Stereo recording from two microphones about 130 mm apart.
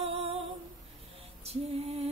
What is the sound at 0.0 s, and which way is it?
Female singing, 50° right (ahead or behind).